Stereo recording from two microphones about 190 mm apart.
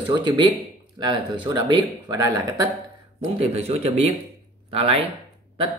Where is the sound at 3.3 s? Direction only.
35° right (ahead or behind).